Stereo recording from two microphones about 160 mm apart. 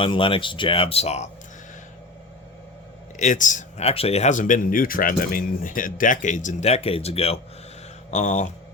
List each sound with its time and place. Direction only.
0.0 s speech: 35° left (ahead or behind)
3.2 s speech: 50° left (ahead or behind)